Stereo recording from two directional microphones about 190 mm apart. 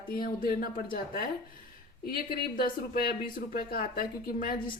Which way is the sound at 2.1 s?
50° left (ahead or behind).